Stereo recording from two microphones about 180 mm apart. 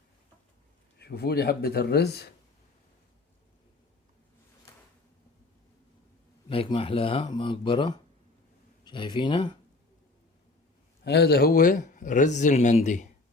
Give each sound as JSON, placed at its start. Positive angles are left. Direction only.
{"t": 0.9, "sound": "speech", "side_deg": 60}
{"t": 6.5, "sound": "speech", "side_deg": 30}
{"t": 11.0, "sound": "speech", "side_deg": 65}